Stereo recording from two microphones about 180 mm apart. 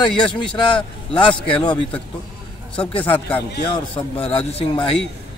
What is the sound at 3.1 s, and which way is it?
Speech, 10° left (ahead or behind).